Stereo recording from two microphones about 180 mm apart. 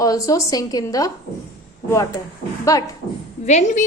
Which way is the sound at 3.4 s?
40° left (ahead or behind).